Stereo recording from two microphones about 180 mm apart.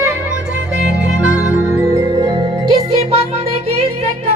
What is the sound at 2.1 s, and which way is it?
Music, 25° right (ahead or behind).